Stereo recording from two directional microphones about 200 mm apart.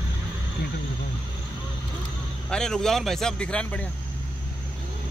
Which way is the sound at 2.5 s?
5° left (ahead or behind).